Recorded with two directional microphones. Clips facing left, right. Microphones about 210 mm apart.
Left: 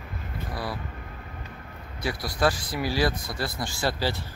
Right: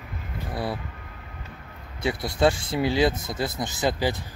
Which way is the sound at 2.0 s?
25° right (ahead or behind).